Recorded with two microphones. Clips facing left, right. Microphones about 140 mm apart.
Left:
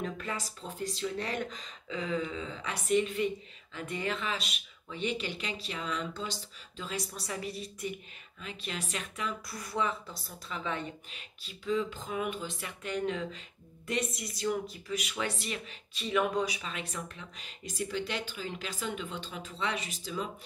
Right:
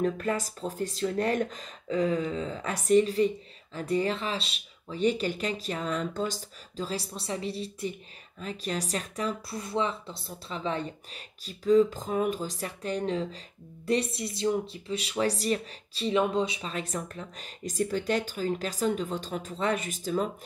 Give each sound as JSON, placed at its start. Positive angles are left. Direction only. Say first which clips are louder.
{"t": 0.0, "sound": "speech", "louder": "right 8 dB", "side_deg": -45}